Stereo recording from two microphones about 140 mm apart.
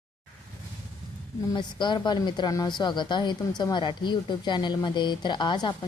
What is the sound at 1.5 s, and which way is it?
A woman's voice, 35° left (ahead or behind).